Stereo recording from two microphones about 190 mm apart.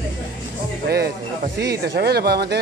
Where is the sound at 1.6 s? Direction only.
60° right (ahead or behind).